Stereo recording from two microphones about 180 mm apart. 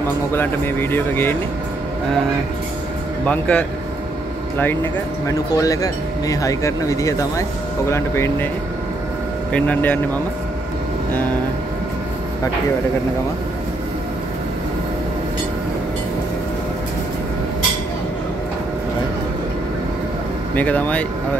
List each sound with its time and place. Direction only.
0.3 s speech: 10° left (ahead or behind)
3.3 s speech: 5° left (ahead or behind)
5.2 s speech: 20° left (ahead or behind)
9.5 s speech: 10° left (ahead or behind)
20.5 s speech: 10° left (ahead or behind)